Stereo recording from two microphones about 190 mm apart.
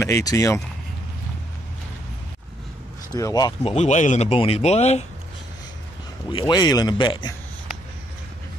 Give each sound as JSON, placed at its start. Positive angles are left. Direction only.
{"t": 0.0, "sound": "speech", "side_deg": 15}
{"t": 3.1, "sound": "speech", "side_deg": 20}
{"t": 3.6, "sound": "speech", "side_deg": 35}
{"t": 6.2, "sound": "speech", "side_deg": 25}